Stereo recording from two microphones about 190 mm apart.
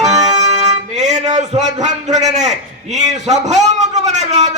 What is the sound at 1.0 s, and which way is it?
A man's voice, 35° right (ahead or behind).